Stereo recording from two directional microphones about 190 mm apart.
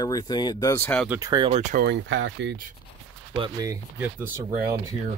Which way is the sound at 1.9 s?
75° right (ahead or behind).